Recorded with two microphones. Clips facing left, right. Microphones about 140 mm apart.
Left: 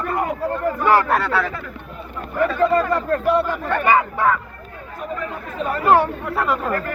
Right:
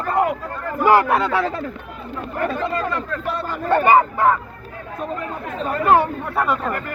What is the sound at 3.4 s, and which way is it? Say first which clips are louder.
Speech: right 3 dB; 40° right (ahead or behind).